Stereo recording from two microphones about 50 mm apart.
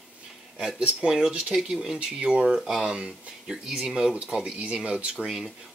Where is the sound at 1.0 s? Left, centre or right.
Centre.